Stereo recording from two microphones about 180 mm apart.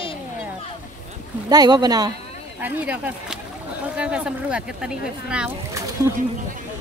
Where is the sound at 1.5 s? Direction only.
20° right (ahead or behind).